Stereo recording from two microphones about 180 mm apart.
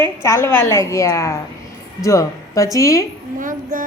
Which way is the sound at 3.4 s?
45° right (ahead or behind).